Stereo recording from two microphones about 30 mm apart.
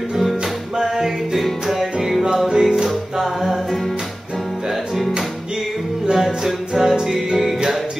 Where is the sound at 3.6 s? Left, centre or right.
Centre.